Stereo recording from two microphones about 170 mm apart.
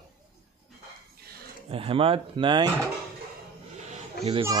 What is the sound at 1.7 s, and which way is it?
Speech, 35° right (ahead or behind).